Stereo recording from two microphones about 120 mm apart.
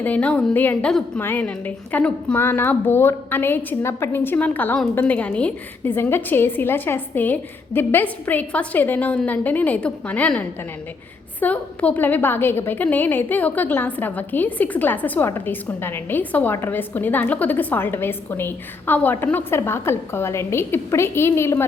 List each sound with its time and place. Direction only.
0.0 s a woman's voice: 10° left (ahead or behind)